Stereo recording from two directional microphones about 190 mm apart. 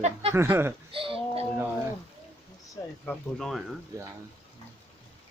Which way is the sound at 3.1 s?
Centre (ahead or behind).